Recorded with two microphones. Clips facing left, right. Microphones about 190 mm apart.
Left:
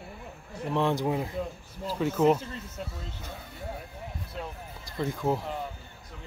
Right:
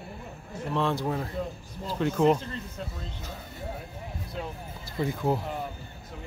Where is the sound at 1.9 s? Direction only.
5° left (ahead or behind).